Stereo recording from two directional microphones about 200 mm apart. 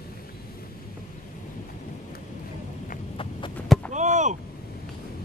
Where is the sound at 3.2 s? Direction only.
25° left (ahead or behind).